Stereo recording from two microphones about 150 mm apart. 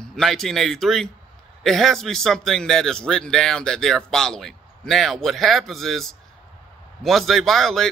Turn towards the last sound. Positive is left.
turn(degrees=0)  # may be behind; listen again after turning